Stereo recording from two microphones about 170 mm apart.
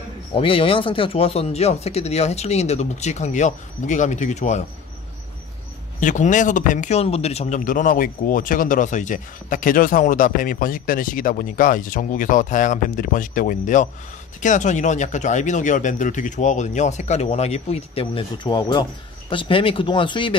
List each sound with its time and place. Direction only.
0.3 s speech: 30° left (ahead or behind)
5.9 s speech: 50° left (ahead or behind); by 20.3 s 30° left (ahead or behind)